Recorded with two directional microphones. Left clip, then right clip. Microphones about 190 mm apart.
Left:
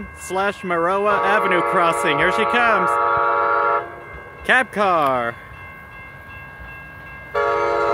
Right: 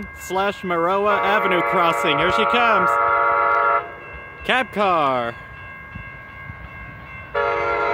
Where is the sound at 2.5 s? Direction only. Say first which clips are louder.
Even; 20° right (ahead or behind).